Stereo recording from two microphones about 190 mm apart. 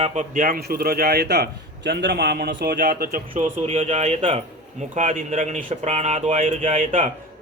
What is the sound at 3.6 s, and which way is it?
A man's voice, 35° right (ahead or behind).